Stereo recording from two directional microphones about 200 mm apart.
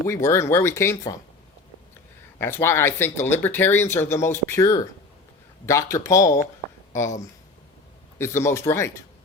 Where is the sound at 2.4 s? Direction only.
10° left (ahead or behind).